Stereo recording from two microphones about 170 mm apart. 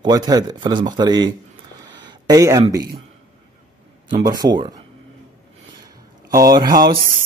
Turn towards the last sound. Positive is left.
turn(degrees=-25)  # may be behind; listen again after turning